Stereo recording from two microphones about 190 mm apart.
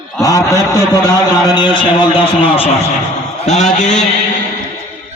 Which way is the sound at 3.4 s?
40° left (ahead or behind).